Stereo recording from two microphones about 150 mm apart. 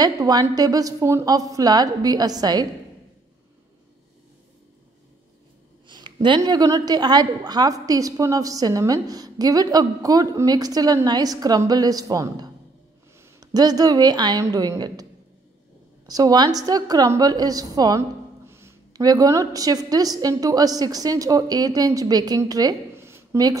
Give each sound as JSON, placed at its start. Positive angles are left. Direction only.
{"t": 0.0, "sound": "a woman's voice", "side_deg": -25}
{"t": 5.9, "sound": "a woman's voice", "side_deg": -30}
{"t": 16.1, "sound": "a woman's voice", "side_deg": -25}